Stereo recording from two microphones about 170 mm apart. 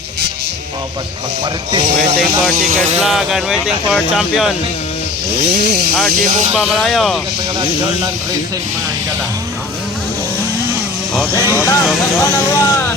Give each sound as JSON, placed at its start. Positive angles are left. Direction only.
{"t": 2.6, "sound": "speech", "side_deg": -45}
{"t": 3.0, "sound": "speech", "side_deg": 0}
{"t": 5.5, "sound": "speech", "side_deg": -70}
{"t": 6.5, "sound": "speech", "side_deg": -5}
{"t": 11.3, "sound": "speech", "side_deg": 15}